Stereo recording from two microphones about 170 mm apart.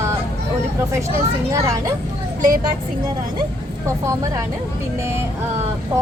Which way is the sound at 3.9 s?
15° right (ahead or behind).